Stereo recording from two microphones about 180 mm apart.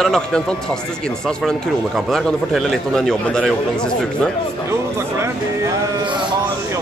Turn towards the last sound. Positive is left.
turn(degrees=-25)  # may be behind; listen again after turning